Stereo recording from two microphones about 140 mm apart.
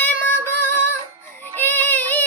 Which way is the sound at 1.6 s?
15° left (ahead or behind).